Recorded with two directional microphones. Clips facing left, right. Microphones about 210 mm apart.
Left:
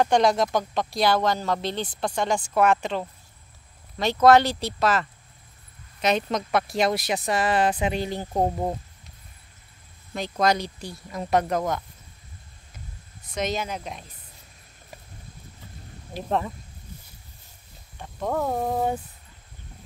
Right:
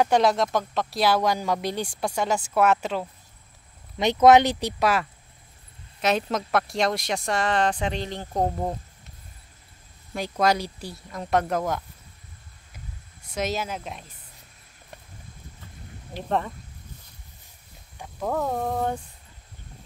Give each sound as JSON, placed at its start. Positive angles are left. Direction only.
{"t": 0.0, "sound": "speech", "side_deg": -5}
{"t": 4.0, "sound": "speech", "side_deg": -20}
{"t": 5.9, "sound": "speech", "side_deg": 0}
{"t": 10.4, "sound": "speech", "side_deg": -5}
{"t": 11.1, "sound": "speech", "side_deg": 5}
{"t": 13.2, "sound": "speech", "side_deg": -5}
{"t": 16.1, "sound": "speech", "side_deg": 5}
{"t": 17.9, "sound": "speech", "side_deg": -5}